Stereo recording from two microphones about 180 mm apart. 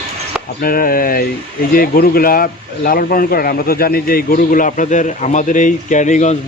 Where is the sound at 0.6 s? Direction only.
55° left (ahead or behind).